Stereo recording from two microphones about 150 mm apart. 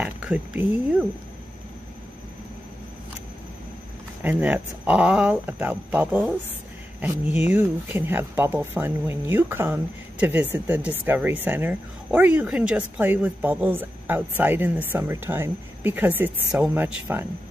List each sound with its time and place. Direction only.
0.0 s speech: 10° right (ahead or behind)
4.2 s speech: 10° right (ahead or behind)